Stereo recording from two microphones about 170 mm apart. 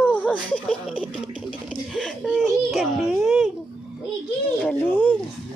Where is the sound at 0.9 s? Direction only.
30° left (ahead or behind).